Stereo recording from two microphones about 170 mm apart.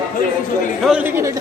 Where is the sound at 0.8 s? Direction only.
10° right (ahead or behind).